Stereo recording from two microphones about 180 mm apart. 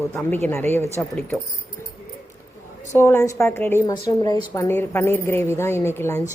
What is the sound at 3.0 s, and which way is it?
A woman's voice, 15° left (ahead or behind).